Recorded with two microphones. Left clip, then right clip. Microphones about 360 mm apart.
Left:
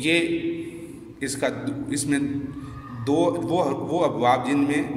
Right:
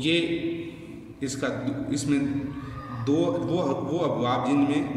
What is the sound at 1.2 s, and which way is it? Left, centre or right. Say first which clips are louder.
A man's voice: left 3 dB; centre.